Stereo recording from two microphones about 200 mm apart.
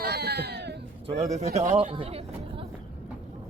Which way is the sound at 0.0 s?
55° right (ahead or behind).